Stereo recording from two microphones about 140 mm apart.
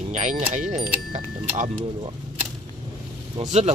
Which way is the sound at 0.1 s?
60° right (ahead or behind).